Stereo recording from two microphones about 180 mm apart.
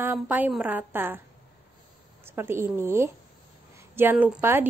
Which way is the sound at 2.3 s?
15° right (ahead or behind).